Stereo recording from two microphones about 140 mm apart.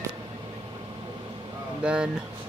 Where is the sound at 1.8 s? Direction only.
5° right (ahead or behind).